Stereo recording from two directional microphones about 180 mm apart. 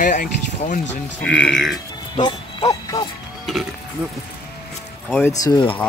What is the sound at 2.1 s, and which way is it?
Speech, 25° left (ahead or behind).